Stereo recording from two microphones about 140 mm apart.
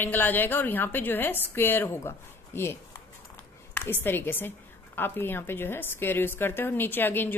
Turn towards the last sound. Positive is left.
turn(degrees=15)  # may be behind; listen again after turning